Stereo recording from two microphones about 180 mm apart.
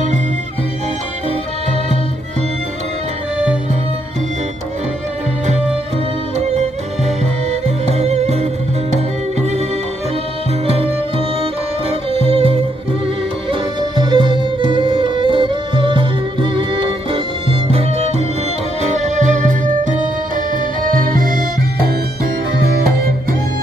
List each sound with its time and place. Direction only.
7.6 s music: 35° right (ahead or behind)
12.1 s music: 30° right (ahead or behind); by 23.1 s 55° right (ahead or behind)